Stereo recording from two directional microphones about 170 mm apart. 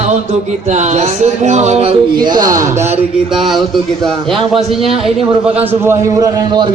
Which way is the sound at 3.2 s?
Centre (ahead or behind).